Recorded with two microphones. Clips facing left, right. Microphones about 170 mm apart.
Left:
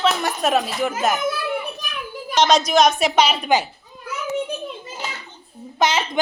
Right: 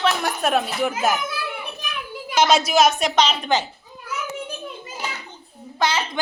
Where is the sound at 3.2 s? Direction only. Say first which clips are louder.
Left 2 dB; 10° left (ahead or behind).